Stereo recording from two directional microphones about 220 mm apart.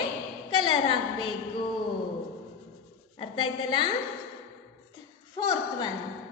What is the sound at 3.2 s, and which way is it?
Speech, 20° left (ahead or behind).